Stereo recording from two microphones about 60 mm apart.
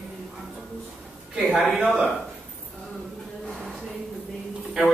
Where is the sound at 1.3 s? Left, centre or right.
Centre.